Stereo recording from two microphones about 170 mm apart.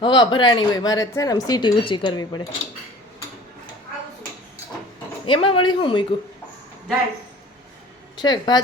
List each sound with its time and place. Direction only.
0.0 s speech: 25° left (ahead or behind)
5.2 s a woman's voice: 30° left (ahead or behind)
8.2 s speech: 25° left (ahead or behind)